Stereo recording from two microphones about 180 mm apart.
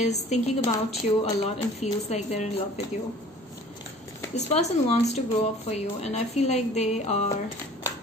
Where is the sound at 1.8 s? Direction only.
35° left (ahead or behind).